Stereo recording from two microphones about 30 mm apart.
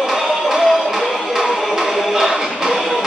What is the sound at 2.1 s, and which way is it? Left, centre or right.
Music, centre.